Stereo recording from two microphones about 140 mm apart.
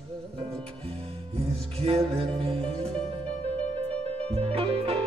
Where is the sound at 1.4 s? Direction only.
45° right (ahead or behind).